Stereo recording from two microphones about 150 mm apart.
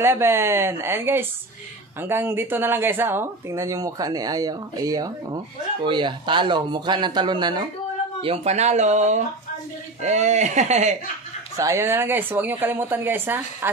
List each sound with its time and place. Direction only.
0.0 s a woman's voice: 15° right (ahead or behind)
8.2 s speech: 45° right (ahead or behind)
11.5 s a woman's voice: 20° right (ahead or behind)